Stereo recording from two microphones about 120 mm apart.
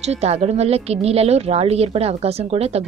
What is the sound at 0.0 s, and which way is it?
Speech, 65° right (ahead or behind).